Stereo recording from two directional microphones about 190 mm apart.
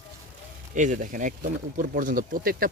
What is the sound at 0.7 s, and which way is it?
Speech, 40° right (ahead or behind).